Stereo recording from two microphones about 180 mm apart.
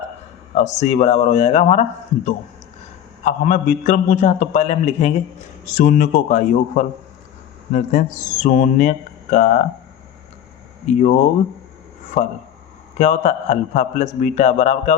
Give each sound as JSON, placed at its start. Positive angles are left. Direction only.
{"t": 0.5, "sound": "a man's voice", "side_deg": 40}
{"t": 10.8, "sound": "speech", "side_deg": 45}
{"t": 13.0, "sound": "a man's voice", "side_deg": 40}